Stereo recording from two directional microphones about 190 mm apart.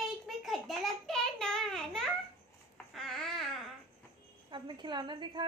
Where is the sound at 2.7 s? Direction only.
Centre (ahead or behind).